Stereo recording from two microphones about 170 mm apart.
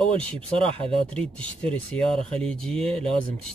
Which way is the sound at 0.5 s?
35° right (ahead or behind).